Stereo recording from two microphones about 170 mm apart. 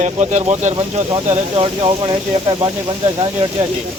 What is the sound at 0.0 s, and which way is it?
Speech, 45° right (ahead or behind).